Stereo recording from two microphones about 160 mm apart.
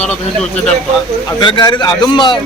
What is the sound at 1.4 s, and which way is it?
Speech, 30° left (ahead or behind).